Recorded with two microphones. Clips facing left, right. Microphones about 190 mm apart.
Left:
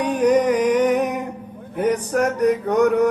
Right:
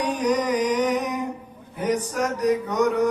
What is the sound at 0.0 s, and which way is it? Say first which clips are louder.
Music: left 6 dB; 60° left (ahead or behind).